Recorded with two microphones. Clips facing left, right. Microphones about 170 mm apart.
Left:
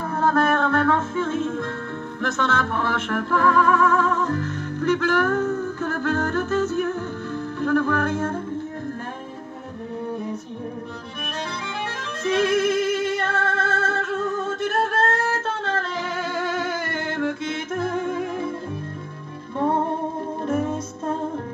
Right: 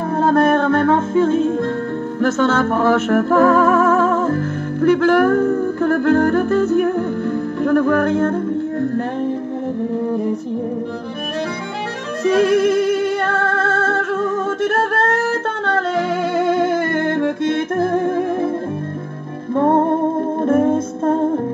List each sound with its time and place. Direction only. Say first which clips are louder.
0.5 s music: right 6 dB; 35° right (ahead or behind); by 8.4 s 60° right (ahead or behind)
12.4 s music: right 6 dB; 65° right (ahead or behind)
19.5 s music: right 8 dB; 55° right (ahead or behind)